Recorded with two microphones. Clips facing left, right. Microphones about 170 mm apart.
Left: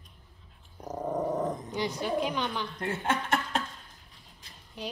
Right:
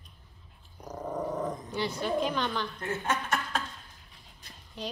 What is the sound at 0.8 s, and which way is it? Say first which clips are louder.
Dog: left 3 dB; 25° left (ahead or behind).